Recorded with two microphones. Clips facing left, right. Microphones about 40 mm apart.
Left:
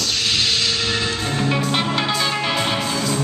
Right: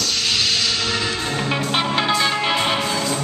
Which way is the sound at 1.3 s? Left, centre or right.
Centre.